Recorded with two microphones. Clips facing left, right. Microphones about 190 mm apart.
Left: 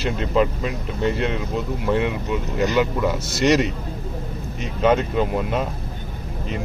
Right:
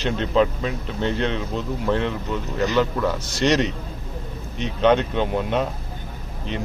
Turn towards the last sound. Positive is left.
turn(degrees=0)  # may be behind; listen again after turning